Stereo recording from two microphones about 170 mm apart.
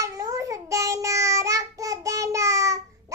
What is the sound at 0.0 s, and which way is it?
Child singing, 20° right (ahead or behind).